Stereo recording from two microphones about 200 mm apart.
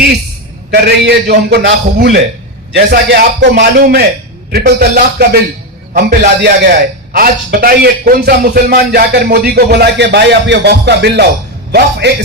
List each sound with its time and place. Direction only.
0.7 s a man's voice: 60° right (ahead or behind)